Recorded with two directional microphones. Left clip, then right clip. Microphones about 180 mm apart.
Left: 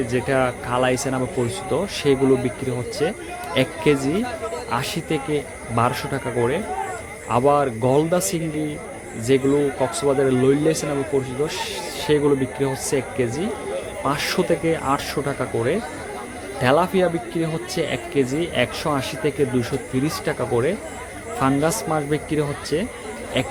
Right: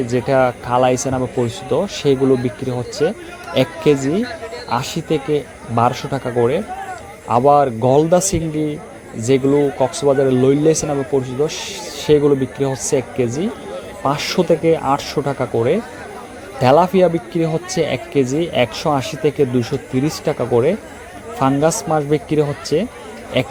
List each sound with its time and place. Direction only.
0.1 s speech: 20° right (ahead or behind)
23.3 s insect: 30° right (ahead or behind)